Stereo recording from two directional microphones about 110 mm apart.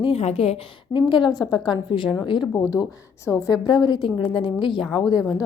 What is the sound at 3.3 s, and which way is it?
A woman's voice, 35° left (ahead or behind).